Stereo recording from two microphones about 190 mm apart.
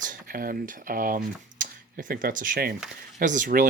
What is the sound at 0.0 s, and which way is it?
Speech, 45° right (ahead or behind).